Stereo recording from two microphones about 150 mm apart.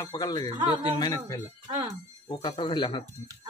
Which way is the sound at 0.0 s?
25° left (ahead or behind).